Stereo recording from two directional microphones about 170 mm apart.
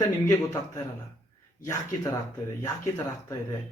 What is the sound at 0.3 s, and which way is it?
A man's voice, 20° left (ahead or behind).